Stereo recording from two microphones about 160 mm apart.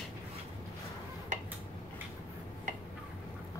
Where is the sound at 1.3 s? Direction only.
50° right (ahead or behind).